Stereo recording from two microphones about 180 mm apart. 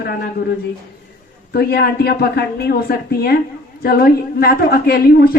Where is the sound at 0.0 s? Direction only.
65° left (ahead or behind).